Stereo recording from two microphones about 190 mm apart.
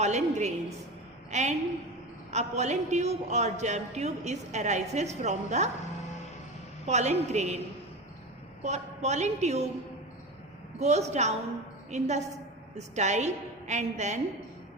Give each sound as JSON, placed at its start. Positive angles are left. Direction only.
{"t": 0.0, "sound": "a man's voice", "side_deg": -35}
{"t": 6.8, "sound": "a man's voice", "side_deg": -35}
{"t": 8.6, "sound": "a man's voice", "side_deg": -35}
{"t": 10.8, "sound": "a man's voice", "side_deg": -35}